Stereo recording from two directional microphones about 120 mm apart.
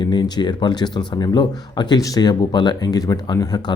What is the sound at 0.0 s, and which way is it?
Speech, 35° left (ahead or behind).